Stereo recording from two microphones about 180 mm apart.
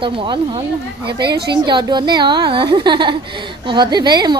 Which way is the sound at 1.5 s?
25° right (ahead or behind).